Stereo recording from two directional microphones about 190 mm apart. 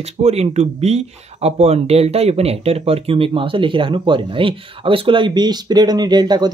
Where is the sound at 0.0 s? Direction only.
35° right (ahead or behind).